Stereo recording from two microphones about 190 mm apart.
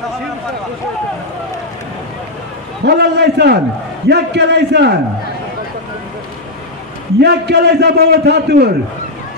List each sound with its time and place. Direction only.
2.8 s a man's voice: 60° right (ahead or behind)
7.2 s a man's voice: 60° right (ahead or behind)